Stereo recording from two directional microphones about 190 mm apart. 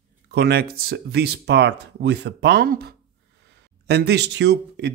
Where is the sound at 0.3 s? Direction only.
55° right (ahead or behind).